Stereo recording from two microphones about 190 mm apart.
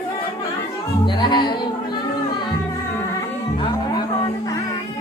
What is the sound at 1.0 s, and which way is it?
Music, 25° left (ahead or behind).